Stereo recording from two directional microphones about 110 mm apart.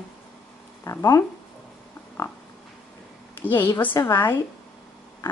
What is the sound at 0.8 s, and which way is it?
Speech, 30° left (ahead or behind).